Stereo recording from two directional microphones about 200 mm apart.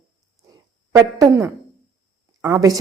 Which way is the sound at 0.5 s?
15° right (ahead or behind).